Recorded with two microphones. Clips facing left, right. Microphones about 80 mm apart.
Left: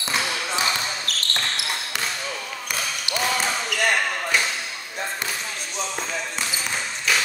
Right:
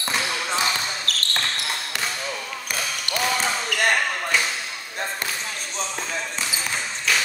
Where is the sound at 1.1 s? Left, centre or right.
Right.